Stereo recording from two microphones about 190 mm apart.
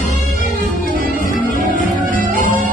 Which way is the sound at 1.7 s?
45° right (ahead or behind).